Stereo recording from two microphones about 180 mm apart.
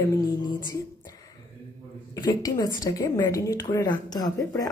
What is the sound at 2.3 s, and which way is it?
A woman's voice, 20° left (ahead or behind).